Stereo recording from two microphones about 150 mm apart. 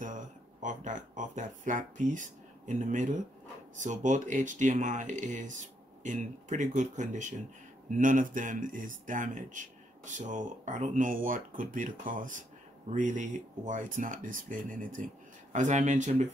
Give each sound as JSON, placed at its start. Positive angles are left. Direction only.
{"t": 0.0, "sound": "speech", "side_deg": -55}
{"t": 15.5, "sound": "speech", "side_deg": -55}